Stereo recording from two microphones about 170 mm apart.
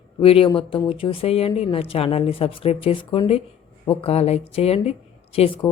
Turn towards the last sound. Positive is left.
turn(degrees=30)  # may be behind; listen again after turning